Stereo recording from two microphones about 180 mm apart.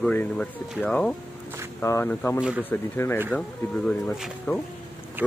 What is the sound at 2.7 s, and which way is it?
Speech, 10° left (ahead or behind).